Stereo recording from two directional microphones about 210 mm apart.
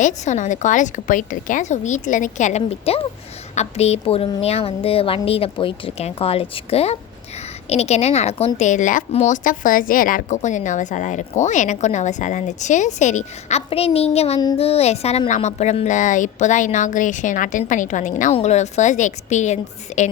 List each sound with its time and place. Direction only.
0.0 s a woman's voice: 35° left (ahead or behind)